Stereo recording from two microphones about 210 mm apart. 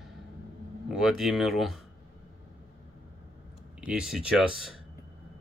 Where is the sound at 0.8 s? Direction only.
Centre (ahead or behind).